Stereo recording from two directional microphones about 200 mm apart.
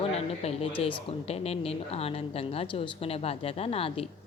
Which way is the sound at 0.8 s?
25° left (ahead or behind).